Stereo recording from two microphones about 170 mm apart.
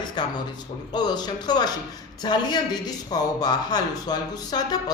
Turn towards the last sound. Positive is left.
turn(degrees=25)  # may be behind; listen again after turning